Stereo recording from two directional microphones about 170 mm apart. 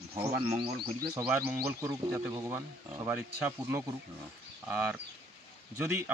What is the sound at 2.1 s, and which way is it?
Speech, 20° right (ahead or behind).